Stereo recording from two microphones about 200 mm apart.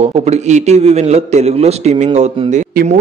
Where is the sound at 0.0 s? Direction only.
35° right (ahead or behind).